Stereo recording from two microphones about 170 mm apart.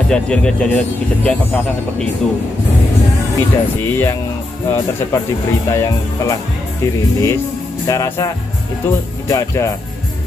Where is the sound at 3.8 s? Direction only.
15° left (ahead or behind).